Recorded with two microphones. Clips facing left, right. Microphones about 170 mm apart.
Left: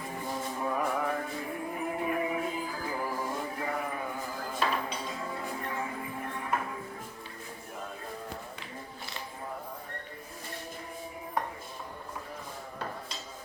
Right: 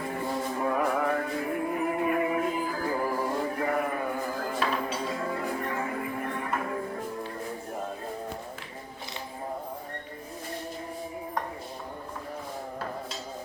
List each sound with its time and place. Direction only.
0.0 s music: 65° right (ahead or behind)